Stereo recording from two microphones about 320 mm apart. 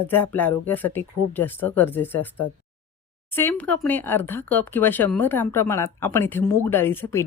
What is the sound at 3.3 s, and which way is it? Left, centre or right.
A woman's voice, centre.